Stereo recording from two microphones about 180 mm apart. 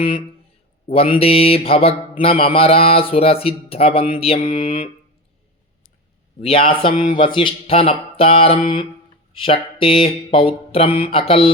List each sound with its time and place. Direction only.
0.9 s speech: 30° left (ahead or behind)
6.4 s speech: 30° left (ahead or behind)
7.0 s mantra: 25° left (ahead or behind)
9.3 s speech: 30° left (ahead or behind)